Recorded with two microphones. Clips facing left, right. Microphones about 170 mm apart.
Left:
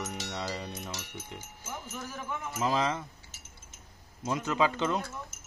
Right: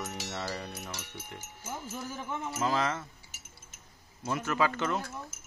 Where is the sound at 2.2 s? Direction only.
30° right (ahead or behind).